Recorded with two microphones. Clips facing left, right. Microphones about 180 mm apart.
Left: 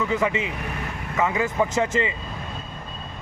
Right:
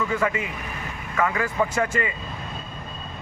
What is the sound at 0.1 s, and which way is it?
Speech, 20° left (ahead or behind).